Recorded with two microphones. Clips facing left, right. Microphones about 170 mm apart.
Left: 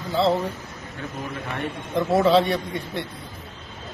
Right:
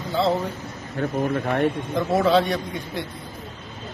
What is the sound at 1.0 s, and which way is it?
Speech, 55° right (ahead or behind).